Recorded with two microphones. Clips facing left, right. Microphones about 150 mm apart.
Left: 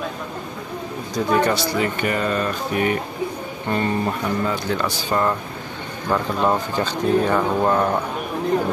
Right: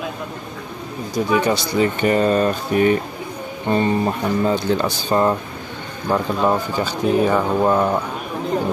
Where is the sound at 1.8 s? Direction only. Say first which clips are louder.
Right 5 dB; 30° right (ahead or behind).